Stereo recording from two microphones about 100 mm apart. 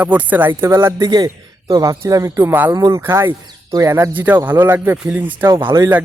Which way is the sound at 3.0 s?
20° right (ahead or behind).